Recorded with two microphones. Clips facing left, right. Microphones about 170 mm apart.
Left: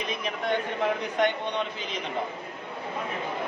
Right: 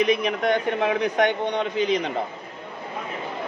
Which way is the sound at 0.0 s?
80° right.